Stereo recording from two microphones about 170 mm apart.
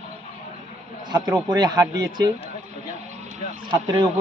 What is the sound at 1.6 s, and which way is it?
Speech, 25° right (ahead or behind).